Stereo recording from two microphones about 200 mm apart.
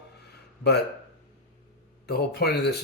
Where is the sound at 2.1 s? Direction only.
55° left (ahead or behind).